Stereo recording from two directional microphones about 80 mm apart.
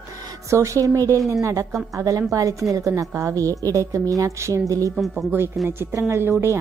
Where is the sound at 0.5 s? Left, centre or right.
Right.